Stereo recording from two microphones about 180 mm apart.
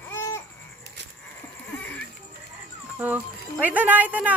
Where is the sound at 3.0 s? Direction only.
10° right (ahead or behind).